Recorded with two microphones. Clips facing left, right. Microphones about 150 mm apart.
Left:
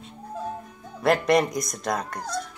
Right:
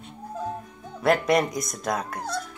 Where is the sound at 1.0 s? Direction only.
Centre (ahead or behind).